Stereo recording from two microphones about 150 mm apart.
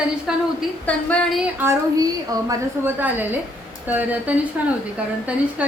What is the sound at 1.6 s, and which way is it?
Speech, 20° right (ahead or behind).